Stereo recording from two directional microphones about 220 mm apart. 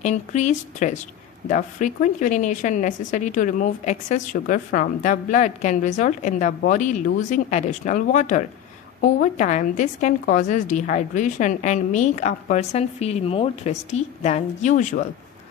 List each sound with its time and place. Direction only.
0.0 s a woman's voice: 30° left (ahead or behind)